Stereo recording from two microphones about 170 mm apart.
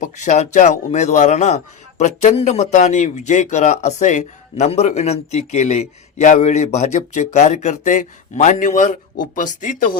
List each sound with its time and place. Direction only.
0.0 s a man's voice: 45° left (ahead or behind)